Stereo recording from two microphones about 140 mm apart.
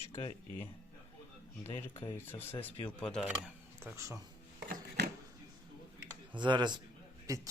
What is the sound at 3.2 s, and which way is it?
Speech, 10° right (ahead or behind).